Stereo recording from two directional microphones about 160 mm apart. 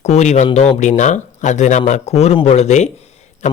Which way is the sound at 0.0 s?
45° left (ahead or behind).